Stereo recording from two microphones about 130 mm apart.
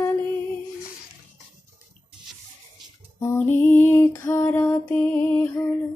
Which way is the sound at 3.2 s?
20° left (ahead or behind).